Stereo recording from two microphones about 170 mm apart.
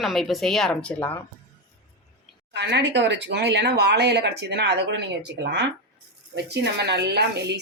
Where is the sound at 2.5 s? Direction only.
85° right.